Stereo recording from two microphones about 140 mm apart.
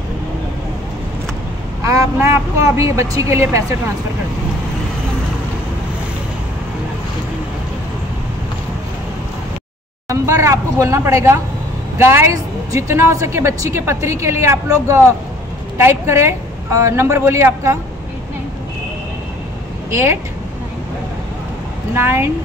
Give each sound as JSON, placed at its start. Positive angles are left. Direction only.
{"t": 2.1, "sound": "a woman's voice", "side_deg": -15}
{"t": 10.0, "sound": "a woman's voice", "side_deg": -20}
{"t": 19.9, "sound": "a woman's voice", "side_deg": -20}
{"t": 21.9, "sound": "speech", "side_deg": -15}